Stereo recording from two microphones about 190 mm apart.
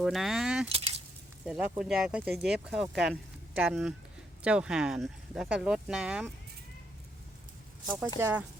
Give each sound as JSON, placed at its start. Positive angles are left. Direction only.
{"t": 0.0, "sound": "speech", "side_deg": 0}
{"t": 0.7, "sound": "keys jangling", "side_deg": -30}
{"t": 1.8, "sound": "speech", "side_deg": -5}
{"t": 7.9, "sound": "speech", "side_deg": -10}